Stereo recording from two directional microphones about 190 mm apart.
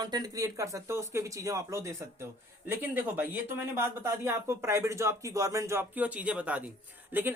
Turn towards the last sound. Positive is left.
turn(degrees=-10)  # may be behind; listen again after turning